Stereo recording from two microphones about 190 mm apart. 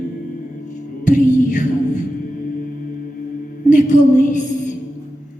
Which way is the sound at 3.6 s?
40° left (ahead or behind).